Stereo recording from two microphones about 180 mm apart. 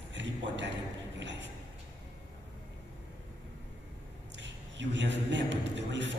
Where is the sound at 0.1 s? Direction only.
80° right.